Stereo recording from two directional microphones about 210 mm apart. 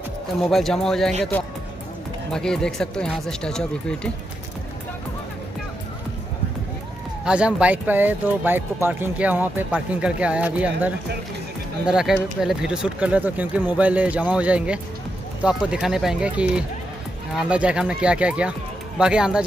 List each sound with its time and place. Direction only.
0.5 s speech: centre (ahead or behind)
2.3 s speech: 5° left (ahead or behind)
7.2 s speech: 5° right (ahead or behind)